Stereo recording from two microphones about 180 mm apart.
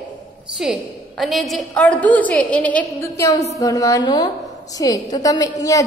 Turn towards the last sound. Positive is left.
turn(degrees=20)  # may be behind; listen again after turning